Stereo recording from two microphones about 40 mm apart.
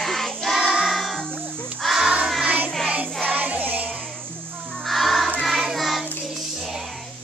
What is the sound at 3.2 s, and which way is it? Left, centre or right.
Music, right.